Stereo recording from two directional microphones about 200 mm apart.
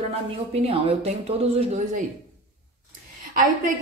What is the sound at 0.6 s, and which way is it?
Speech, 30° right (ahead or behind).